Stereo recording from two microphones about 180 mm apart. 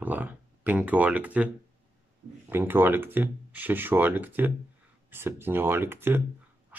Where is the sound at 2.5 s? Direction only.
10° right (ahead or behind).